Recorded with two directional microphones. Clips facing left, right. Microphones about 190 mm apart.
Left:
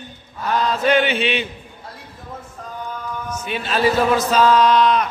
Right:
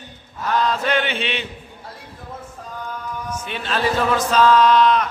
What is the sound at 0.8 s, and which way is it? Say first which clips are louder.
Chant: left 5 dB; 10° left (ahead or behind).